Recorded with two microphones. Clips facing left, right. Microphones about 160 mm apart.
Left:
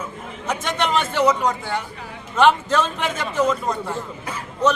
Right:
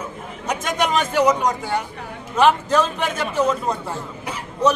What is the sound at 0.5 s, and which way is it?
Speech, 10° right (ahead or behind).